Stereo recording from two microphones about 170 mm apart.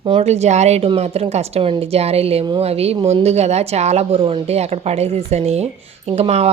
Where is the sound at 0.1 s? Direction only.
40° right (ahead or behind).